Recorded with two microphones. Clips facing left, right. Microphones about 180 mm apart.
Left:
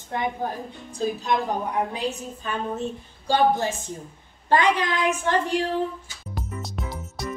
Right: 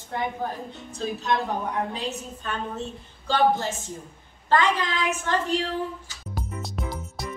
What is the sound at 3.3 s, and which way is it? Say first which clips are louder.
Speech: left 1 dB; 15° left (ahead or behind).